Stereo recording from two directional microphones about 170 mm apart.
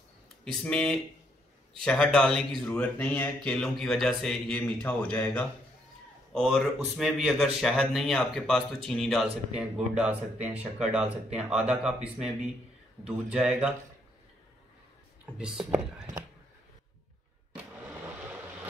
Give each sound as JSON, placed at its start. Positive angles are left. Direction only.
{"t": 0.5, "sound": "a man's voice", "side_deg": 5}
{"t": 15.3, "sound": "a man's voice", "side_deg": -5}